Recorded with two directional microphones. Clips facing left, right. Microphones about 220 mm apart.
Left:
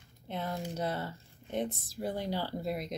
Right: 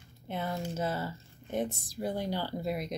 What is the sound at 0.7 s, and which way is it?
Speech, 5° right (ahead or behind).